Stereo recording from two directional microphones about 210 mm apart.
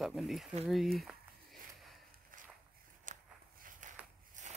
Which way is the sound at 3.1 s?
40° right (ahead or behind).